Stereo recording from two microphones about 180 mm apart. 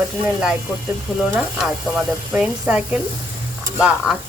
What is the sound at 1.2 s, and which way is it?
Speech, centre (ahead or behind).